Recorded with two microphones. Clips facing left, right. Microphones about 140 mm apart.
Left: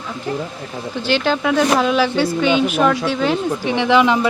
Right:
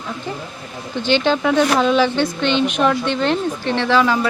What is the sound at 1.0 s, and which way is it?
Speech, 5° left (ahead or behind).